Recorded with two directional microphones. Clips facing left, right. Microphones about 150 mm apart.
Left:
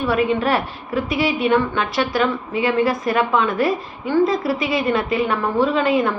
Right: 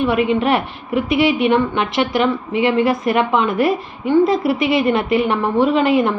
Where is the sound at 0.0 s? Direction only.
20° right (ahead or behind).